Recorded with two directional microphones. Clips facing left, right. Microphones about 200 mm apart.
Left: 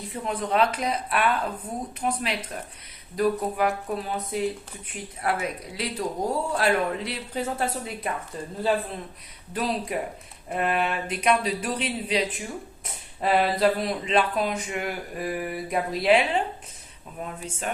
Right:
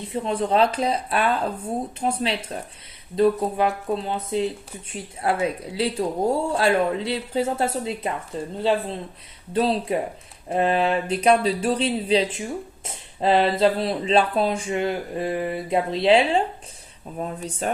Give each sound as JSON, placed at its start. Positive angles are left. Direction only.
{"t": 0.1, "sound": "speech", "side_deg": -30}